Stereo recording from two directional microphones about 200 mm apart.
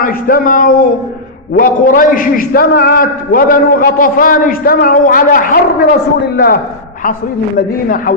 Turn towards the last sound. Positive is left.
turn(degrees=50)  # may be behind; listen again after turning